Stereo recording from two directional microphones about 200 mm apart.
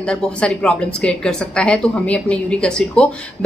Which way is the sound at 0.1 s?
5° left (ahead or behind).